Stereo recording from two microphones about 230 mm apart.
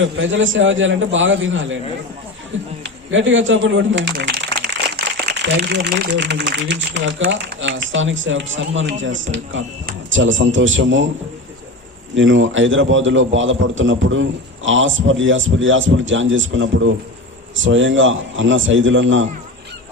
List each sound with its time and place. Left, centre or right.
0.0 s a man's voice: right
2.8 s a man's voice: right
12.1 s a man's voice: right